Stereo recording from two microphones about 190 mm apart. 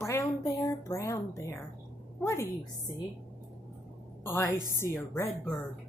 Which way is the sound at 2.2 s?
15° left (ahead or behind).